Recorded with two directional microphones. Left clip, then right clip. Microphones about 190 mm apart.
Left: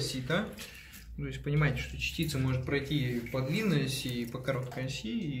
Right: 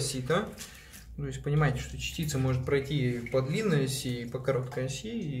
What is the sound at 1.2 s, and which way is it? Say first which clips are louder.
Speech: right 2 dB; 45° right (ahead or behind).